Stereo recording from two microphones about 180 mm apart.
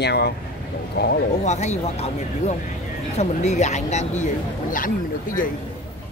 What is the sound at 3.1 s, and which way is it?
Speech, 40° left (ahead or behind).